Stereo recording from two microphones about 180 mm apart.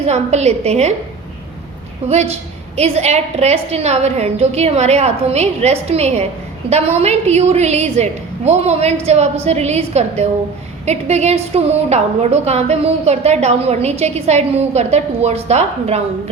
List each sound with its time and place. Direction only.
0.0 s a woman's voice: 40° right (ahead or behind)
2.0 s a woman's voice: 35° right (ahead or behind)